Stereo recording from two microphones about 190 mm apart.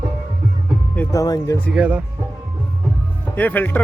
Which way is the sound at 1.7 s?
5° right (ahead or behind).